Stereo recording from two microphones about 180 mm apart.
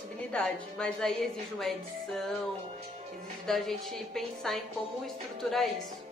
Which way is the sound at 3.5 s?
Centre (ahead or behind).